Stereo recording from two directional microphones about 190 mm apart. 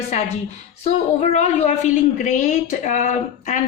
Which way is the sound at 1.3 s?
35° left (ahead or behind).